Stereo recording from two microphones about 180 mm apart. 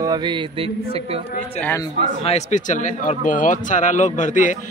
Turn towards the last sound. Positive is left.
turn(degrees=45)  # may be behind; listen again after turning